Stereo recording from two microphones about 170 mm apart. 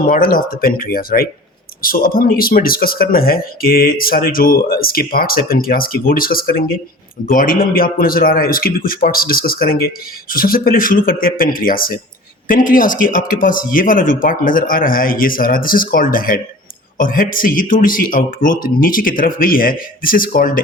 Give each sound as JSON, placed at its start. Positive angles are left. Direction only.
{"t": 0.1, "sound": "speech", "side_deg": 55}